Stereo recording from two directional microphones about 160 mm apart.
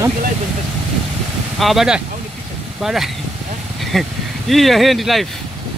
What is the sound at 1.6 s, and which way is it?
Speech, centre (ahead or behind).